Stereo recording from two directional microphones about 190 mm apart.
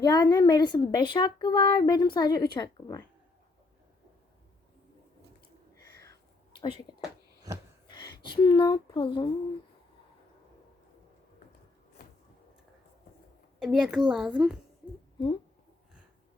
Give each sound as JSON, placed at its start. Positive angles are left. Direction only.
{"t": 0.0, "sound": "a woman's voice", "side_deg": 20}
{"t": 6.6, "sound": "a woman's voice", "side_deg": 25}
{"t": 13.6, "sound": "a woman's voice", "side_deg": 0}